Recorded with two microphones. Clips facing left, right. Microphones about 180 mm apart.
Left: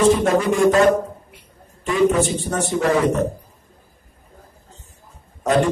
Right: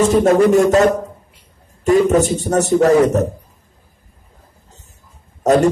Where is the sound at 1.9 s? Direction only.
40° right (ahead or behind).